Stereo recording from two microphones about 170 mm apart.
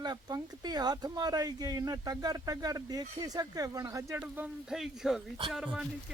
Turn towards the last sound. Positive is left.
turn(degrees=-5)  # may be behind; listen again after turning